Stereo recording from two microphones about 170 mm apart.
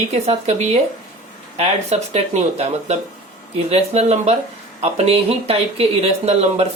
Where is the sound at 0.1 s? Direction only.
40° right (ahead or behind).